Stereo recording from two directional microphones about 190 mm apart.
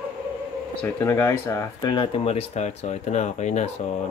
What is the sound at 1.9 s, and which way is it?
Speech, 25° left (ahead or behind).